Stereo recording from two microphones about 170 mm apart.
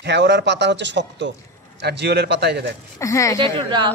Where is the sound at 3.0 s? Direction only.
20° left (ahead or behind).